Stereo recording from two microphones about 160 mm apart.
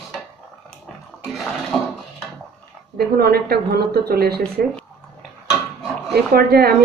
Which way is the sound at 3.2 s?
70° right (ahead or behind).